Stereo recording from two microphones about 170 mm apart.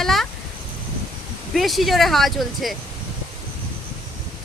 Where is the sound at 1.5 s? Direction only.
Centre (ahead or behind).